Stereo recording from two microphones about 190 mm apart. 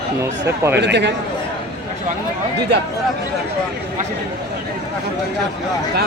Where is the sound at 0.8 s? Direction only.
65° right (ahead or behind).